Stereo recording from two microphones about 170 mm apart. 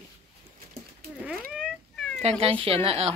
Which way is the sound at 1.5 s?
Centre (ahead or behind).